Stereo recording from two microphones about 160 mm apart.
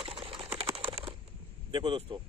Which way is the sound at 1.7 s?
30° right (ahead or behind).